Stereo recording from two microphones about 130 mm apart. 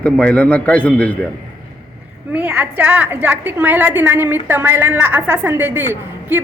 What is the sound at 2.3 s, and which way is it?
A woman's voice, 10° right (ahead or behind).